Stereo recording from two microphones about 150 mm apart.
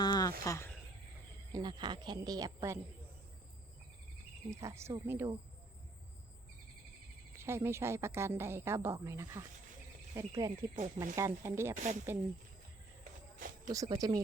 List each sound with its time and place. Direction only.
0.0 s a sound: 30° left (ahead or behind)
1.5 s speech: 30° right (ahead or behind)
4.5 s speech: 20° right (ahead or behind)
7.3 s speech: 15° right (ahead or behind)
10.8 s speech: 55° right (ahead or behind)
11.0 s speech: 20° right (ahead or behind)
11.7 s speech: 55° right (ahead or behind)
13.7 s speech: 25° right (ahead or behind)